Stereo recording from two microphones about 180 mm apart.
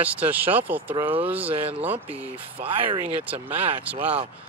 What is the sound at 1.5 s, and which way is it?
Speech, 30° right (ahead or behind).